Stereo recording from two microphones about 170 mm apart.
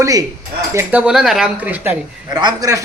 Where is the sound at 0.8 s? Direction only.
10° right (ahead or behind).